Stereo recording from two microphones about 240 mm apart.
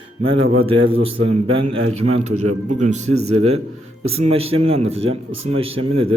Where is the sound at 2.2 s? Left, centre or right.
Right.